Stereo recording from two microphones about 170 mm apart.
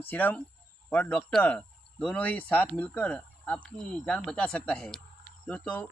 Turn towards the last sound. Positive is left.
turn(degrees=10)  # may be behind; listen again after turning